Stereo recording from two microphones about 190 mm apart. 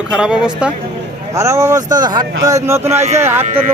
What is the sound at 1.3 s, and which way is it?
Speech, 15° right (ahead or behind).